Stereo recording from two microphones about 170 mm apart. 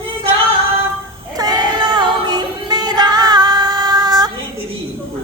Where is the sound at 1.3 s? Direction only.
25° right (ahead or behind).